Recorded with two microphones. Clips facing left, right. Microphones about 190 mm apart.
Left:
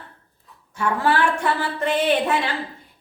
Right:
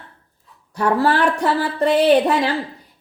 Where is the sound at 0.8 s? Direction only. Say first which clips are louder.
Right 3 dB; 35° right (ahead or behind).